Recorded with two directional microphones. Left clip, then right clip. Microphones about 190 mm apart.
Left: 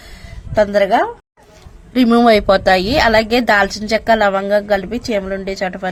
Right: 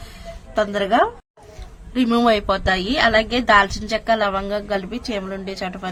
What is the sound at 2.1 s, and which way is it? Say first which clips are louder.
A woman's voice: left 7 dB; 20° left (ahead or behind).